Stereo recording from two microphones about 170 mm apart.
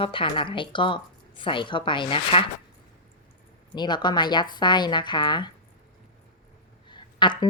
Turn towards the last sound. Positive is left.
turn(degrees=25)  # may be behind; listen again after turning